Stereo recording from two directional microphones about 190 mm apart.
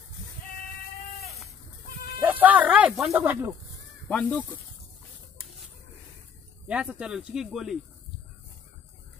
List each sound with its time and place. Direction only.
1.9 s bleat: 50° left (ahead or behind)
2.2 s snake: 10° right (ahead or behind)
4.1 s speech: 5° left (ahead or behind)
6.7 s speech: 5° right (ahead or behind)